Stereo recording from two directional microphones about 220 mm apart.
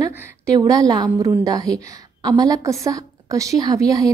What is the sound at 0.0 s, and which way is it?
A woman's voice, 15° right (ahead or behind).